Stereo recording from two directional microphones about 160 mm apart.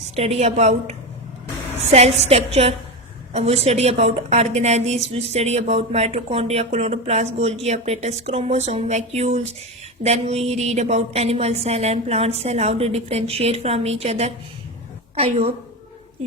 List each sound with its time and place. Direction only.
0.2 s a woman's voice: 40° right (ahead or behind)